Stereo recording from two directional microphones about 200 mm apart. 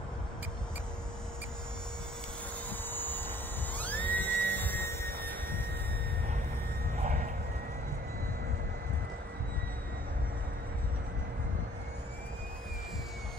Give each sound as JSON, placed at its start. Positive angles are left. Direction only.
{"t": 2.9, "sound": "music", "side_deg": 10}
{"t": 7.0, "sound": "vehicle", "side_deg": -40}